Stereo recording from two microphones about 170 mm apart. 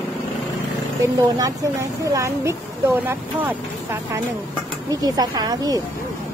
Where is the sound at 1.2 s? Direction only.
20° right (ahead or behind).